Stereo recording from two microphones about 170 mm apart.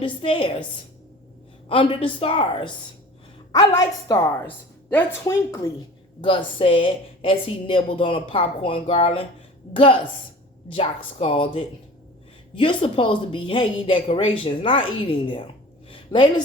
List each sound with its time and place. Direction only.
0.0 s speech: 30° left (ahead or behind)
1.6 s a woman's voice: 30° left (ahead or behind)
6.2 s a woman's voice: 30° left (ahead or behind)
15.9 s a sound: 30° left (ahead or behind)